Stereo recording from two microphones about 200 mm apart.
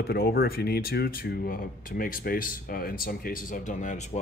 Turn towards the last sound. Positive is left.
turn(degrees=35)  # may be behind; listen again after turning